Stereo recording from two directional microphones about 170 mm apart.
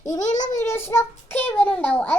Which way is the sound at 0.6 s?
15° left (ahead or behind).